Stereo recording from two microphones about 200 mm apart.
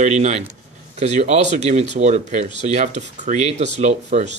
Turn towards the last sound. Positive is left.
turn(degrees=-35)  # may be behind; listen again after turning